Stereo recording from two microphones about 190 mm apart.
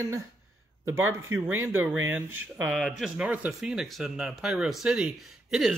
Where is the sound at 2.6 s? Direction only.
Centre (ahead or behind).